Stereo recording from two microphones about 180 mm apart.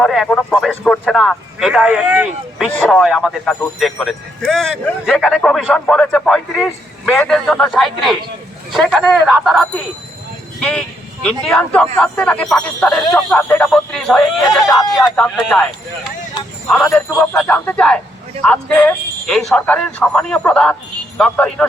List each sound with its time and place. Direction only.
0.0 s speech: centre (ahead or behind)
16.6 s a man's voice: 5° left (ahead or behind)